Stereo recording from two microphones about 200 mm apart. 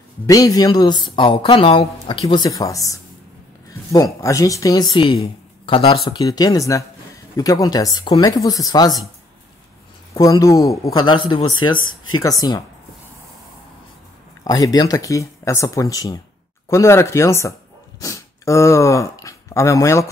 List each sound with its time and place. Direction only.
0.3 s speech: 20° left (ahead or behind)
10.1 s speech: 20° left (ahead or behind)
11.8 s speech: 90° left
12.2 s speech: 20° left (ahead or behind)
14.4 s speech: 20° left (ahead or behind)